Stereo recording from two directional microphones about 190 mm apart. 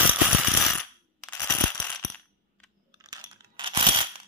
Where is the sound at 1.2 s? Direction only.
10° left (ahead or behind).